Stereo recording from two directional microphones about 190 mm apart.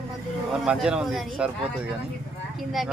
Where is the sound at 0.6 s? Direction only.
5° right (ahead or behind).